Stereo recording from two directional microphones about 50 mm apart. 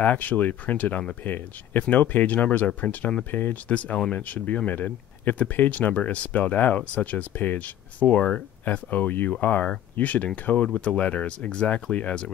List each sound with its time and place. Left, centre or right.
0.0 s speech: left
3.6 s speech: left